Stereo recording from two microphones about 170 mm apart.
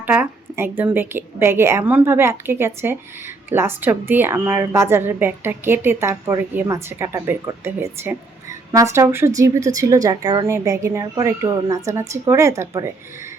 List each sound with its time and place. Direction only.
0.0 s a woman's voice: 10° right (ahead or behind)